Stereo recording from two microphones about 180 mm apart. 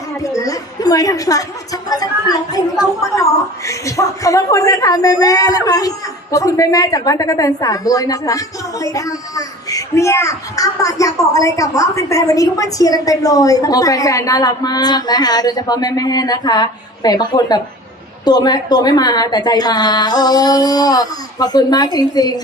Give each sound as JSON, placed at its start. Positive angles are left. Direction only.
{"t": 0.2, "sound": "a woman's voice", "side_deg": 20}